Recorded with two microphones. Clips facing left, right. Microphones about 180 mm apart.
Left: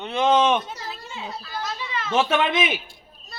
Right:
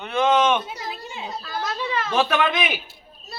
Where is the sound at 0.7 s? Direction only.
15° right (ahead or behind).